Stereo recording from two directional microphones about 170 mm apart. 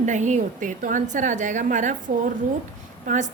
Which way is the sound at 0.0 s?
45° right (ahead or behind).